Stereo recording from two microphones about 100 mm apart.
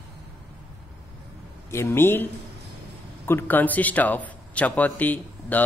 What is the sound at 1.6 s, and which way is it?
Speech, 25° left (ahead or behind).